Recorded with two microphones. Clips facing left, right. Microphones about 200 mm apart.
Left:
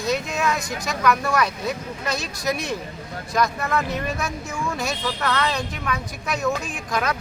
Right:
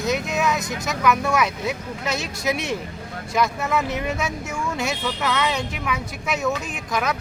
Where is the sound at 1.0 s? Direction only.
5° right (ahead or behind).